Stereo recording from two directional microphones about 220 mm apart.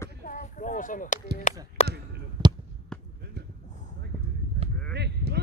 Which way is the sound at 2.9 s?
5° left (ahead or behind).